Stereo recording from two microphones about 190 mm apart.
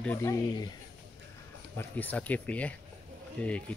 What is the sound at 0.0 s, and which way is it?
Speech, 10° left (ahead or behind).